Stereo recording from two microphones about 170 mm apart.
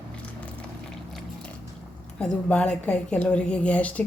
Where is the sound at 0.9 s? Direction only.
5° left (ahead or behind).